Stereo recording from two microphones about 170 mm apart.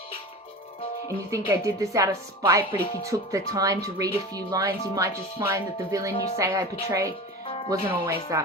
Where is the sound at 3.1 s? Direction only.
20° right (ahead or behind).